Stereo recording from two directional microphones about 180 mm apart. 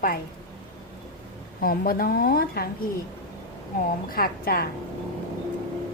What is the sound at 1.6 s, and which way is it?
A woman's voice, 55° left (ahead or behind).